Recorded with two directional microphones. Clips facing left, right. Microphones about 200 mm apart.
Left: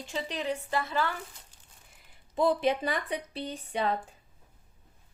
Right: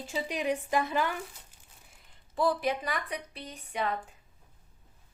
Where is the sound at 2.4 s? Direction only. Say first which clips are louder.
Left 3 dB; 25° left (ahead or behind).